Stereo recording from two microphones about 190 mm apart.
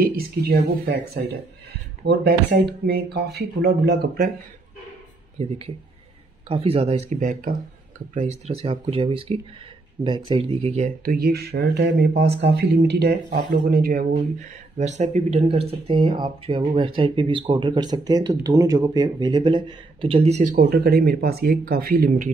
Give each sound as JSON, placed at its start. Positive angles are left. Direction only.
{"t": 0.0, "sound": "speech", "side_deg": -55}
{"t": 5.4, "sound": "speech", "side_deg": -35}
{"t": 11.1, "sound": "speech", "side_deg": -55}
{"t": 20.5, "sound": "speech", "side_deg": -55}